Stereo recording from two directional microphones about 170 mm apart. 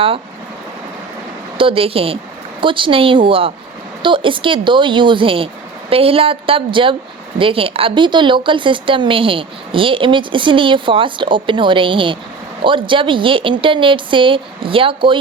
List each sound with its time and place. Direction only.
1.5 s a woman's voice: 30° right (ahead or behind)